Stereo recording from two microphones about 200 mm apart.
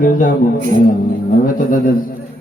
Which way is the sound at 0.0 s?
45° left (ahead or behind).